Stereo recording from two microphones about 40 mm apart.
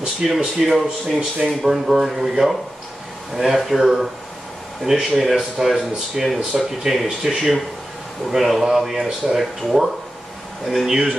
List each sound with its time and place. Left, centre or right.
0.0 s a man's voice: centre
5.1 s a man's voice: centre